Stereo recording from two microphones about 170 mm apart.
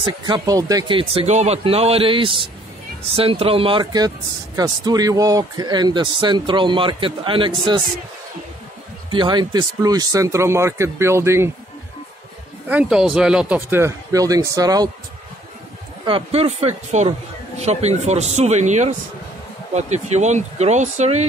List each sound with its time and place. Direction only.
0.0 s speech: 30° right (ahead or behind)
9.1 s speech: 25° right (ahead or behind)
12.6 s speech: 5° right (ahead or behind); by 14.9 s 20° right (ahead or behind)
16.1 s speech: 35° right (ahead or behind)